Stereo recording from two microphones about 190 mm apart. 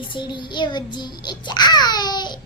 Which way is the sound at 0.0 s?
25° left (ahead or behind).